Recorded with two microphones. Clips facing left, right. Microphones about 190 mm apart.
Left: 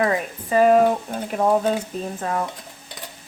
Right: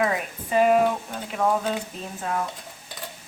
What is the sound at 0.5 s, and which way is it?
Guitar, 40° left (ahead or behind).